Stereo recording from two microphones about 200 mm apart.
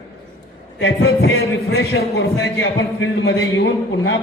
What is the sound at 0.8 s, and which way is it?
A man's voice, 60° left (ahead or behind).